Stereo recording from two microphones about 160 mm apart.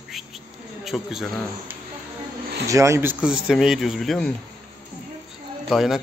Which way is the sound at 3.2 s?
5° right (ahead or behind).